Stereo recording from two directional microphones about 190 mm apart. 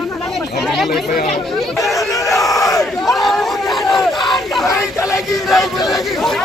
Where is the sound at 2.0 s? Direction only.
15° left (ahead or behind).